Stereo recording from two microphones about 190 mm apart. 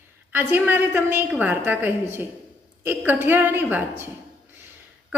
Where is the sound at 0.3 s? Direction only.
10° right (ahead or behind).